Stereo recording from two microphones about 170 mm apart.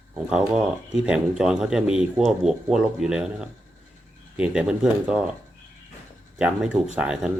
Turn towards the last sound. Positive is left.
turn(degrees=-5)  # may be behind; listen again after turning